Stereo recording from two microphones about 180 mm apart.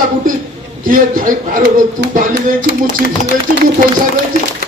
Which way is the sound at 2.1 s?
55° right (ahead or behind).